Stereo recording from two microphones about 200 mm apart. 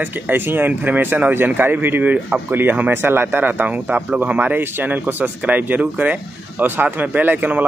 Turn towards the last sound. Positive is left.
turn(degrees=-10)  # may be behind; listen again after turning